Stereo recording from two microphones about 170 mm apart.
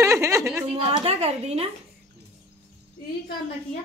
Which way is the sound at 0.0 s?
15° right (ahead or behind).